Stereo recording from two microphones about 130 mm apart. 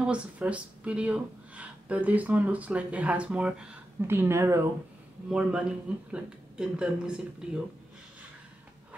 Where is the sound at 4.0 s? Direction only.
15° right (ahead or behind).